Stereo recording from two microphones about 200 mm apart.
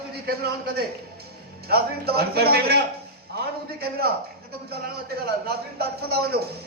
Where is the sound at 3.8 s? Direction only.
50° right (ahead or behind).